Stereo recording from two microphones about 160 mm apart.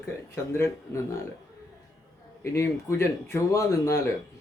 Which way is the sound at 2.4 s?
15° left (ahead or behind).